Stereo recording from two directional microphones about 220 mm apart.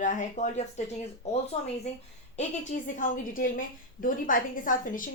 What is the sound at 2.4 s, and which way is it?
A woman's voice, 35° left (ahead or behind).